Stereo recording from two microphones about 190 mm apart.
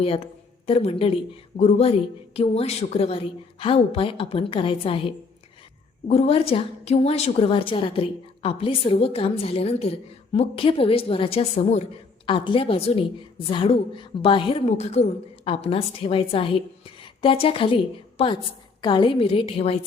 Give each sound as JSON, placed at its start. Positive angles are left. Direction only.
{"t": 0.0, "sound": "a woman's voice", "side_deg": 30}